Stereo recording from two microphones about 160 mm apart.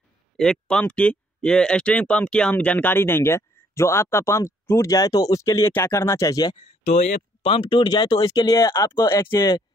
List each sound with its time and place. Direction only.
0.4 s speech: 5° left (ahead or behind); by 6.5 s 20° left (ahead or behind)
6.8 s speech: 45° left (ahead or behind); by 9.6 s 15° left (ahead or behind)